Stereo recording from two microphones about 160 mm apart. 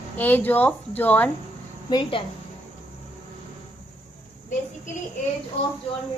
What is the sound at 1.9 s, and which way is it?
Speech, 30° left (ahead or behind).